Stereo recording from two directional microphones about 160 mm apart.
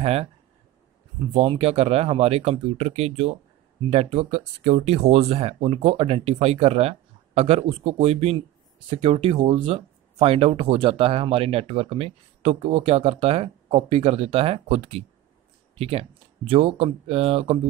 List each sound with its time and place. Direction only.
0.0 s speech: 40° right (ahead or behind)
1.3 s speech: 35° right (ahead or behind)